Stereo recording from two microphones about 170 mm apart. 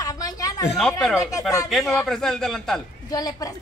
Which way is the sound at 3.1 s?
20° left (ahead or behind).